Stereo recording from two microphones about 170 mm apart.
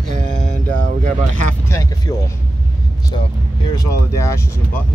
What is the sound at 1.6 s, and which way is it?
Speech, 20° left (ahead or behind).